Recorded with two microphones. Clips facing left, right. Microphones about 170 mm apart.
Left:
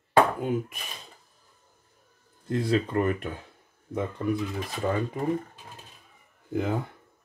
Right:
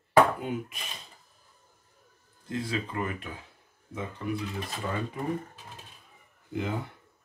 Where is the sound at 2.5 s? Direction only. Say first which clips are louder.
Left 7 dB; 45° left (ahead or behind).